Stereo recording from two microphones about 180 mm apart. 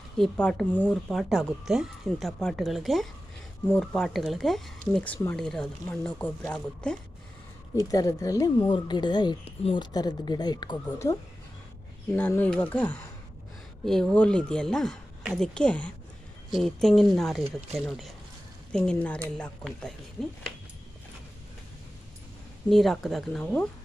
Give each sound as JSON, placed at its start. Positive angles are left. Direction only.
{"t": 0.2, "sound": "speech", "side_deg": 5}
{"t": 7.8, "sound": "speech", "side_deg": 20}
{"t": 12.1, "sound": "speech", "side_deg": 10}
{"t": 22.7, "sound": "speech", "side_deg": 0}